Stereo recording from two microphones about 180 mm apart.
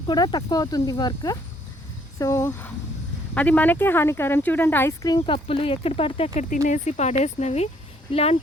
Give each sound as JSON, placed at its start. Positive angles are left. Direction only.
{"t": 0.1, "sound": "speech", "side_deg": 25}